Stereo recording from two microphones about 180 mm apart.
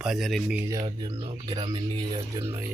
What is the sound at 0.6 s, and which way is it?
Speech, 20° right (ahead or behind).